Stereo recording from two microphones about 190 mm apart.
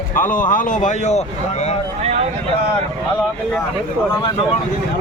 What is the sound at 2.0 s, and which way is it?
Speech, 35° right (ahead or behind).